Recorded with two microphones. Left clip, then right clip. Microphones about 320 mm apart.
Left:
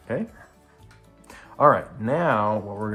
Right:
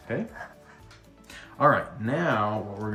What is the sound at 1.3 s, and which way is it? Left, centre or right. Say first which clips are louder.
Speech: left 4 dB; centre.